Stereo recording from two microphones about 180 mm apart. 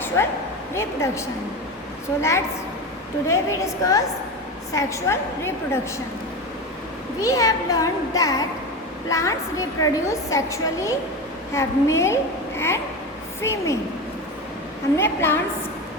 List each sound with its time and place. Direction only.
0.2 s a woman's voice: 15° left (ahead or behind)
3.2 s a woman's voice: 15° left (ahead or behind)
7.2 s a child's voice: 20° left (ahead or behind)
14.9 s a woman's voice: 15° left (ahead or behind)